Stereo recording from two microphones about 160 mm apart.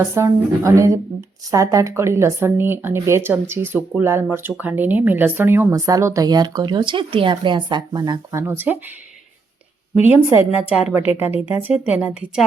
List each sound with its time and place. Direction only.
0.0 s speech: 15° right (ahead or behind)
10.6 s speech: 10° right (ahead or behind)